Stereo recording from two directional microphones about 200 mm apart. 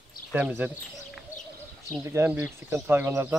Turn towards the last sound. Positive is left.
turn(degrees=-10)  # may be behind; listen again after turning